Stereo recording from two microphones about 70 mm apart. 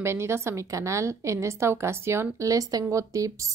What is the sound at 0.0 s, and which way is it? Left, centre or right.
A woman's voice, right.